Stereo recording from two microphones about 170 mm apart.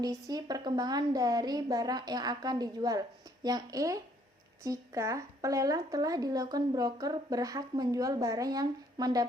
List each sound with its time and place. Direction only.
0.0 s speech: 25° right (ahead or behind)